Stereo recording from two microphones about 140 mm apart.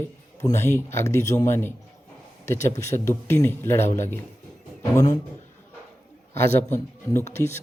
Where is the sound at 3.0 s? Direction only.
20° left (ahead or behind).